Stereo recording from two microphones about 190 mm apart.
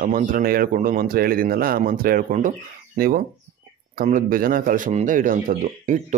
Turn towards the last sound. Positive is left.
turn(degrees=-40)  # may be behind; listen again after turning